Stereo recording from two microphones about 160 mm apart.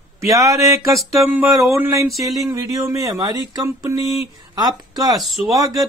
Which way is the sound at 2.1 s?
Centre (ahead or behind).